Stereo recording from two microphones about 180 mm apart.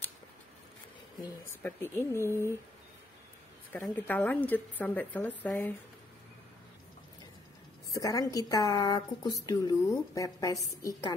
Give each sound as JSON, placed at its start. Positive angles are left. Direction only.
{"t": 1.6, "sound": "speech", "side_deg": 15}
{"t": 3.7, "sound": "speech", "side_deg": 10}
{"t": 7.9, "sound": "speech", "side_deg": 20}